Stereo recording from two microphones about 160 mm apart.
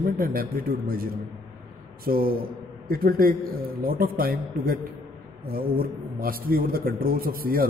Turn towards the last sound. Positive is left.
turn(degrees=-65)  # may be behind; listen again after turning